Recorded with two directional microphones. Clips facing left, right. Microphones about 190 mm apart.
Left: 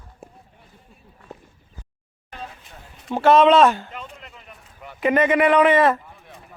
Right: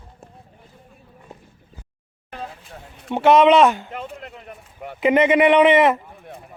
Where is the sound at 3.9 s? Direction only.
60° right (ahead or behind).